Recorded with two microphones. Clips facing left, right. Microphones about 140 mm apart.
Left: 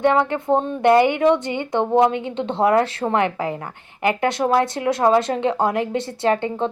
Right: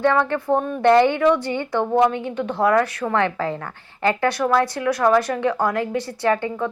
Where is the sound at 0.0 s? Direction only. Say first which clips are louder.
Left 1 dB; 20° left (ahead or behind).